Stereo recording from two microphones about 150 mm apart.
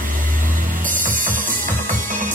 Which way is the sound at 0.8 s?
60° right (ahead or behind).